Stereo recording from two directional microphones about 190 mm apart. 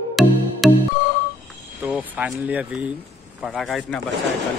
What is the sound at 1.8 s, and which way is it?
Vehicle, 10° right (ahead or behind).